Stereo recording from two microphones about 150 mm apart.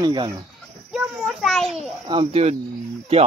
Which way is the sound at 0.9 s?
5° right (ahead or behind).